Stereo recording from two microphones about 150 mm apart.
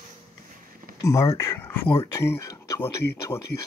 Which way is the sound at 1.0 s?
20° left (ahead or behind).